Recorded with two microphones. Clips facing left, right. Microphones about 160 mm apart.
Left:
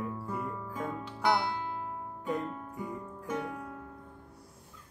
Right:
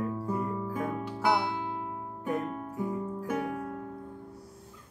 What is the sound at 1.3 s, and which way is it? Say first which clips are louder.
Music: right 2 dB; 20° right (ahead or behind).